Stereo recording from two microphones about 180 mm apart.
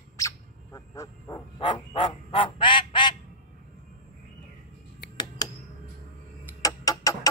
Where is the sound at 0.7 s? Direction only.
15° left (ahead or behind).